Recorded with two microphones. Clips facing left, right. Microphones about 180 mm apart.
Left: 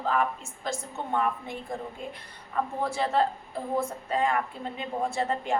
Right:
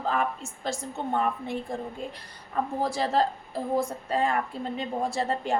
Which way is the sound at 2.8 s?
35° right (ahead or behind).